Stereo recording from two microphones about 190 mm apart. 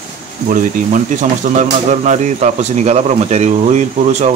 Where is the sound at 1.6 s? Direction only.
40° right (ahead or behind).